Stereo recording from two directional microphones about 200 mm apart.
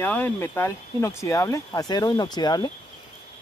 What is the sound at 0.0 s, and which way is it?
Speech, 10° left (ahead or behind).